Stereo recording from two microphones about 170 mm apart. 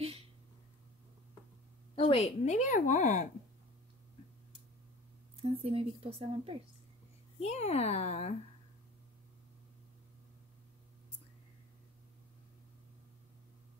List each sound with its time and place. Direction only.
2.0 s a woman's voice: 35° left (ahead or behind)
5.6 s speech: 35° right (ahead or behind)
7.3 s speech: 40° left (ahead or behind)